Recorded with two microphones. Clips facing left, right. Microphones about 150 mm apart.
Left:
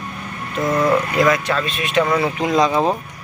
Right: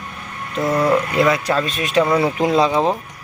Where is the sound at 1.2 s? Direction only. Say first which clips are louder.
Even; 30° right (ahead or behind).